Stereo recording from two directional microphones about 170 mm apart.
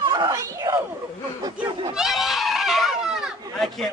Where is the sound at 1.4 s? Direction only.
30° right (ahead or behind).